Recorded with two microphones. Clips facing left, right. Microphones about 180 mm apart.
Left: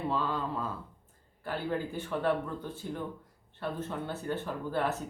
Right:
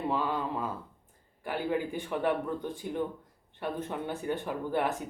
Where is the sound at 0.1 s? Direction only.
15° right (ahead or behind).